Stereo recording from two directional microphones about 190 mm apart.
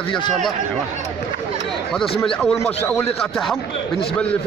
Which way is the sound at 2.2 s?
Centre (ahead or behind).